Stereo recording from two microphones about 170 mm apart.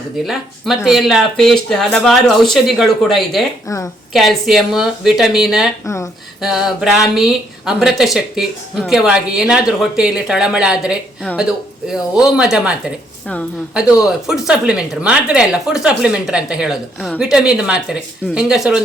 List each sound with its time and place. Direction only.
0.3 s a woman's voice: centre (ahead or behind)
5.8 s speech: 15° left (ahead or behind)
6.4 s a woman's voice: centre (ahead or behind)
13.7 s a woman's voice: 5° right (ahead or behind)